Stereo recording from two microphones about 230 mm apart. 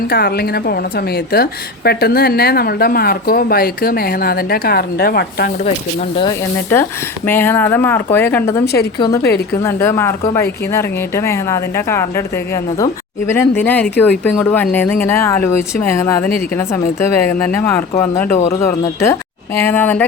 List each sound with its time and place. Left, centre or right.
0.1 s a woman's voice: left
7.3 s speech: centre
8.6 s a woman's voice: left
9.0 s speech: centre